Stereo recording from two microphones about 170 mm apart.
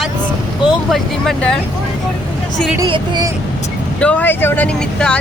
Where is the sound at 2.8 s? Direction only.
25° right (ahead or behind).